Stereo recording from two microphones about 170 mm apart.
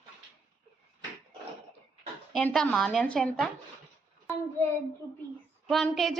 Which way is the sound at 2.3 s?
5° left (ahead or behind).